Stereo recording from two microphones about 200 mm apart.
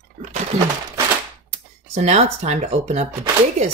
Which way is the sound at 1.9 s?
35° right (ahead or behind).